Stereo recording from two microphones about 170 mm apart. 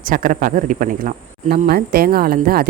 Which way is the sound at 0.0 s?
55° right (ahead or behind).